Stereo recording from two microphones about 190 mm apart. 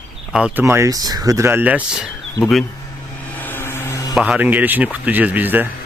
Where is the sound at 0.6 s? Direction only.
15° right (ahead or behind).